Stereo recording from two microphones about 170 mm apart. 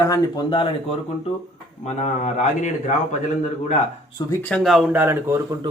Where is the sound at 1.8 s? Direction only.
45° left (ahead or behind).